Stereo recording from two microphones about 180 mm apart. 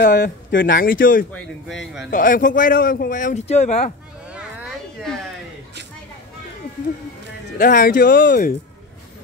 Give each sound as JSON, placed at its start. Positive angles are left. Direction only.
{"t": 0.0, "sound": "speech", "side_deg": 60}
{"t": 4.3, "sound": "a sound", "side_deg": 0}
{"t": 7.5, "sound": "speech", "side_deg": 50}